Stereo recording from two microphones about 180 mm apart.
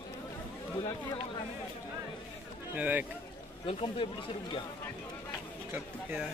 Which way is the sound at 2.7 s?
10° right (ahead or behind).